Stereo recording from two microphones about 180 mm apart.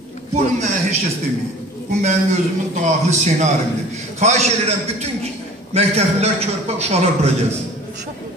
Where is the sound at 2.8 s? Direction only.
40° right (ahead or behind).